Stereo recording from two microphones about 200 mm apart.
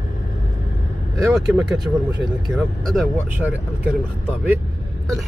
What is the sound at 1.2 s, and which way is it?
Speech, 5° right (ahead or behind).